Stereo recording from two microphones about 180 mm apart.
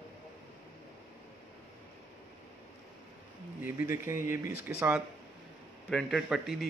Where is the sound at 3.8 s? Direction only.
15° right (ahead or behind).